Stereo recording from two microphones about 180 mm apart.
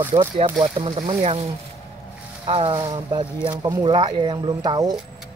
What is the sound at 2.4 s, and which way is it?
Speech, 30° right (ahead or behind).